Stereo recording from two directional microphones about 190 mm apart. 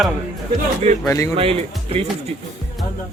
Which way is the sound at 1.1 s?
15° left (ahead or behind).